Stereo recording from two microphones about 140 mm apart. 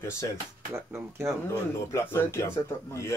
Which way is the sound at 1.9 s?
20° left (ahead or behind).